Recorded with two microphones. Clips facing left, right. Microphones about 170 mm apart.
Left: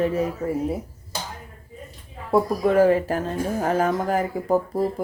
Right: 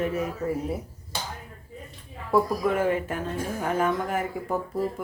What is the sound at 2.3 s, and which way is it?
A woman's voice, 35° left (ahead or behind).